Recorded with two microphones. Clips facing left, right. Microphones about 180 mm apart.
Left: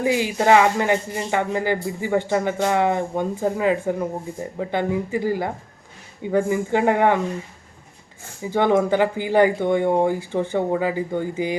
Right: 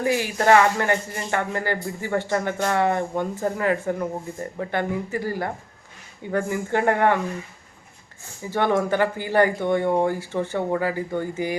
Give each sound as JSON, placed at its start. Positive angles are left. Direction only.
{"t": 0.0, "sound": "speech", "side_deg": 15}
{"t": 8.4, "sound": "speech", "side_deg": 15}